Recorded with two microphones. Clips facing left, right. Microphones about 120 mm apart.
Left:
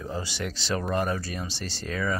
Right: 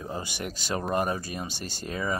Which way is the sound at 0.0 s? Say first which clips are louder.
Left 1 dB; 15° right (ahead or behind).